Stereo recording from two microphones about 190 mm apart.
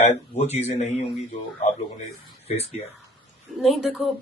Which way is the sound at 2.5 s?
35° left (ahead or behind).